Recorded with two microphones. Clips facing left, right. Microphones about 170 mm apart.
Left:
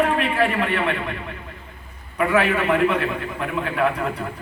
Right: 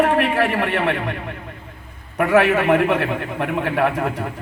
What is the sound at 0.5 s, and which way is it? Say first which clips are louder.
Speech: right 2 dB; 60° right (ahead or behind).